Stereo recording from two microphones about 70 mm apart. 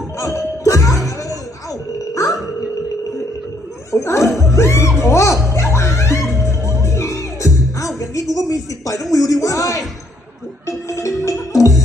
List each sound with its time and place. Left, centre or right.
0.6 s music: left
3.9 s music: left
8.4 s speech: left
10.7 s music: left